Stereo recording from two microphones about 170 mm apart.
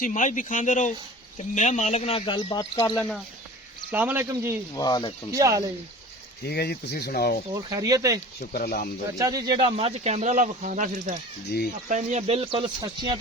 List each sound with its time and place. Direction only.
0.0 s speech: 50° left (ahead or behind); by 3.0 s 25° left (ahead or behind)
3.9 s speech: 10° right (ahead or behind)
4.7 s speech: 25° left (ahead or behind)
5.3 s speech: 20° right (ahead or behind)
6.4 s speech: 70° left (ahead or behind)
7.5 s speech: 20° right (ahead or behind)
8.4 s speech: 60° left (ahead or behind)
9.1 s speech: 20° right (ahead or behind)